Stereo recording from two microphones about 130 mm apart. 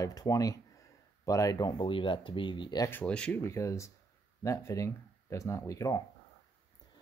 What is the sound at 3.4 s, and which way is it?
Speech, 20° left (ahead or behind).